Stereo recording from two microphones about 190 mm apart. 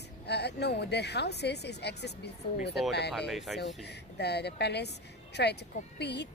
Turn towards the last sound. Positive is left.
turn(degrees=60)  # may be behind; listen again after turning